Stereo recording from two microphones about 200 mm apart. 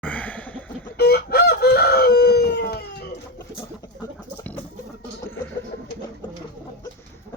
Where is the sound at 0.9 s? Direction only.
50° left (ahead or behind).